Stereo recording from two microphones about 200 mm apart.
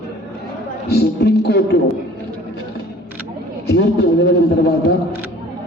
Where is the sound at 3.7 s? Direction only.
60° left (ahead or behind).